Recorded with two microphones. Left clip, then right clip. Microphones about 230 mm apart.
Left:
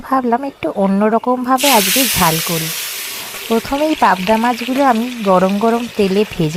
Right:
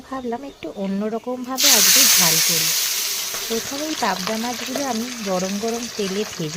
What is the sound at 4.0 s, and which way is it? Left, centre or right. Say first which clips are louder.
Speech: left 10 dB; left.